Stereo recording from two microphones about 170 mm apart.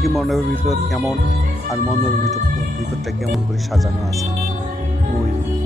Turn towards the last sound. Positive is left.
turn(degrees=0)  # may be behind; listen again after turning